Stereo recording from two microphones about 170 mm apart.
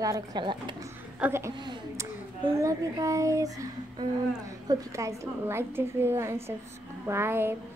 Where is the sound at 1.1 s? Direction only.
15° right (ahead or behind).